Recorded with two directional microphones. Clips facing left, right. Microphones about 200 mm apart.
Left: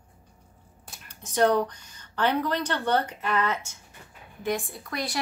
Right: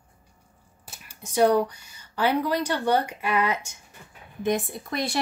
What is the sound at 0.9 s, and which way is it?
Speech, 10° right (ahead or behind).